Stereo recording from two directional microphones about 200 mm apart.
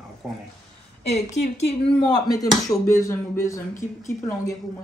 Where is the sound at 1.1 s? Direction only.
35° left (ahead or behind).